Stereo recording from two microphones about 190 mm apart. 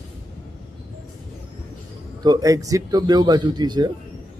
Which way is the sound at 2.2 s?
20° right (ahead or behind).